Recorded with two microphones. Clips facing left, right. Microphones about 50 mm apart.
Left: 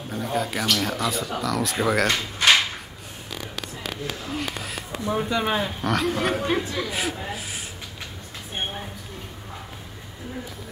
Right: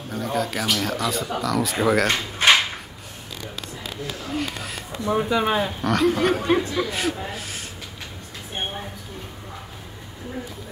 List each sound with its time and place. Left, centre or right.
0.1 s speech: centre
2.0 s drawer open or close: right
4.3 s speech: centre